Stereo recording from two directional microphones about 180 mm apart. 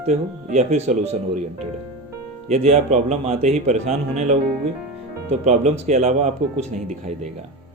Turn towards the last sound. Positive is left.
turn(degrees=-40)  # may be behind; listen again after turning